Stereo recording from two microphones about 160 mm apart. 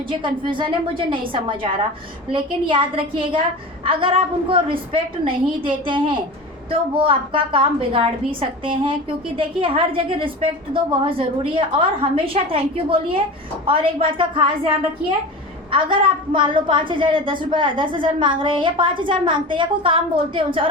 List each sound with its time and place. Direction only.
0.1 s a woman's voice: 30° right (ahead or behind)
15.7 s a woman's voice: 30° right (ahead or behind)